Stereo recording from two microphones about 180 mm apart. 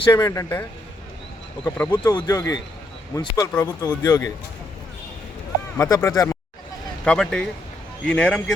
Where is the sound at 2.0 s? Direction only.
20° left (ahead or behind).